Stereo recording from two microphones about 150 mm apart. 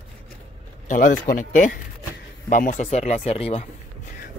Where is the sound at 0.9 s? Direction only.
65° left (ahead or behind); by 3.6 s 45° left (ahead or behind).